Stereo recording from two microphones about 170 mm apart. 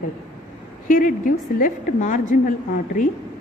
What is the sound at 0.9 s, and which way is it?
A woman's voice, 50° left (ahead or behind).